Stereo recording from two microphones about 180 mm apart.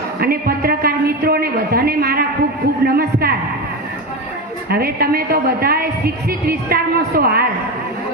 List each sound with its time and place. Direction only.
0.2 s a woman's voice: 60° right (ahead or behind)
4.7 s a woman's voice: 60° right (ahead or behind)